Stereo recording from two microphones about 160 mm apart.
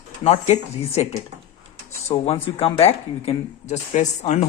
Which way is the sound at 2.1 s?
30° left (ahead or behind).